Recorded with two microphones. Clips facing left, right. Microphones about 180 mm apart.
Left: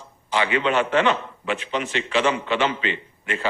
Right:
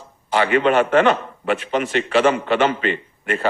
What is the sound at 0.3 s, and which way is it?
A man's voice, 50° right (ahead or behind).